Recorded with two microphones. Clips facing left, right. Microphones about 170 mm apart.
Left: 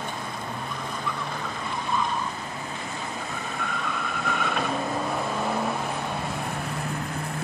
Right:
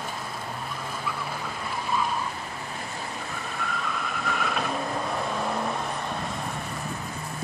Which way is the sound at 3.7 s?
Centre (ahead or behind).